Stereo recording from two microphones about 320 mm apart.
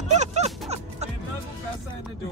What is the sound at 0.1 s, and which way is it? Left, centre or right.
Music, right.